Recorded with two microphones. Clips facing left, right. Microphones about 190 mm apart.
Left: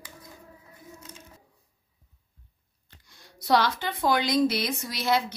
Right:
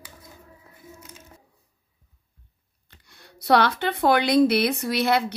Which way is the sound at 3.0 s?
65° right (ahead or behind).